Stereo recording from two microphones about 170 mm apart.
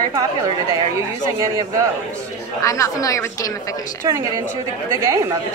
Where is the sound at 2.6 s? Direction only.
20° left (ahead or behind).